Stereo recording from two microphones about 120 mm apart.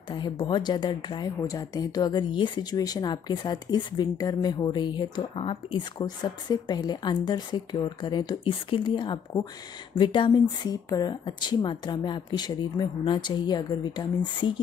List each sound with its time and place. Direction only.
0.5 s a woman's voice: 40° left (ahead or behind)
5.3 s a woman's voice: 50° left (ahead or behind)